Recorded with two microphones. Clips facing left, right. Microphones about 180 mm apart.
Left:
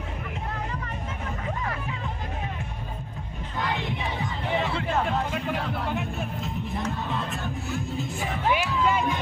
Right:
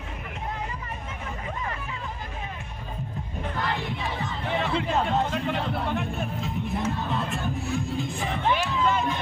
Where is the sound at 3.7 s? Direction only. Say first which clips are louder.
Even; 15° left (ahead or behind).